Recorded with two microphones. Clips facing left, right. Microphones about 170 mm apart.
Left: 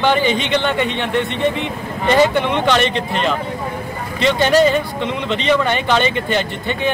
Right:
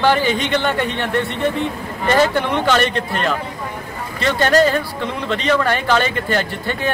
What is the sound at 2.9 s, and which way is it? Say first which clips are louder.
Speech: left 1 dB; 20° left (ahead or behind).